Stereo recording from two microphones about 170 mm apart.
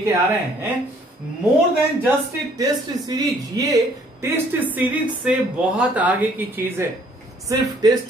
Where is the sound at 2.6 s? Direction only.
20° right (ahead or behind).